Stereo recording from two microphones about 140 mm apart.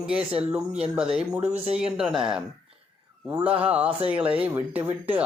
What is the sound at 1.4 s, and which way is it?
Speech, 50° right (ahead or behind).